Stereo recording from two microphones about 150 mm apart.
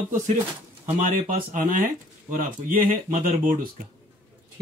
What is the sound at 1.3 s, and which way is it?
Speech, 65° right (ahead or behind).